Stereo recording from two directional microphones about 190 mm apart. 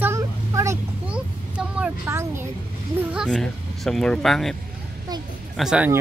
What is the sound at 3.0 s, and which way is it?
Speech, 5° right (ahead or behind).